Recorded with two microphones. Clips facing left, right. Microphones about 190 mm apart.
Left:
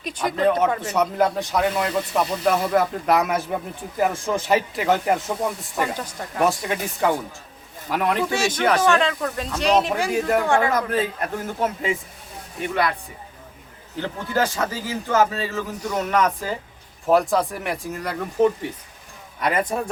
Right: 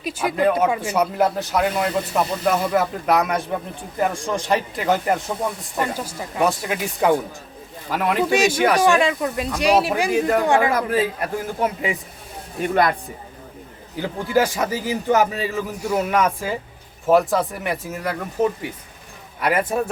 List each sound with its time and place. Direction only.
0.0 s a man's voice: 5° right (ahead or behind)
7.0 s a man's voice: 15° right (ahead or behind)
7.9 s speech: centre (ahead or behind)
8.3 s a man's voice: 15° right (ahead or behind)
10.4 s a man's voice: 15° right (ahead or behind)
12.6 s speech: 45° right (ahead or behind)
13.9 s a man's voice: 10° right (ahead or behind)